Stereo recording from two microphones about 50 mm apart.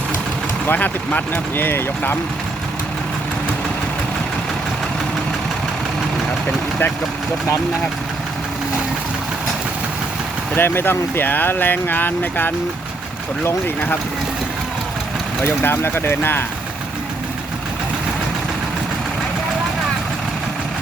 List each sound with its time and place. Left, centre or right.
0.7 s speech: left
10.5 s speech: left
15.4 s speech: left